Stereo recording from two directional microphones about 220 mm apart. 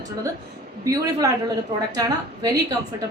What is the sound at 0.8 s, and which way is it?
Speech, 15° right (ahead or behind).